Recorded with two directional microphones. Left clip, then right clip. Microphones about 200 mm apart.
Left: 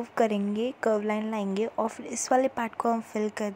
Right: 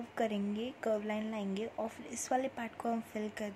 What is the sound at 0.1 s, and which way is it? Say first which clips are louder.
A woman's voice: left 9 dB; 15° left (ahead or behind).